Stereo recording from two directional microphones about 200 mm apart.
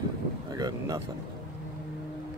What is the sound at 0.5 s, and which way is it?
Speech, 20° right (ahead or behind).